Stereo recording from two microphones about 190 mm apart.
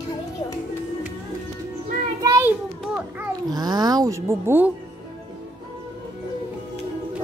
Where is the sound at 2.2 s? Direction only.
15° right (ahead or behind).